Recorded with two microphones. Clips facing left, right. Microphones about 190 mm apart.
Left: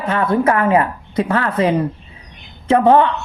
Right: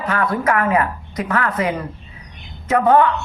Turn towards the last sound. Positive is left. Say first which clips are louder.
# left 2 dB
turn(degrees=30)  # may be behind; listen again after turning